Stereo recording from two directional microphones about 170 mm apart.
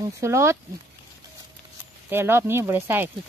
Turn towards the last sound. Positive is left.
turn(degrees=-10)  # may be behind; listen again after turning